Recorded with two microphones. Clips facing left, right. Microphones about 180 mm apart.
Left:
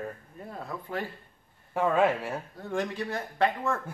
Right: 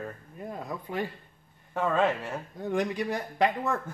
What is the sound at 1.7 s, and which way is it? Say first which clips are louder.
Speech: left 2 dB; 10° left (ahead or behind).